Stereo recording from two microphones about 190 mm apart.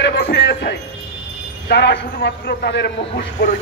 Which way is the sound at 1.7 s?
60° left (ahead or behind).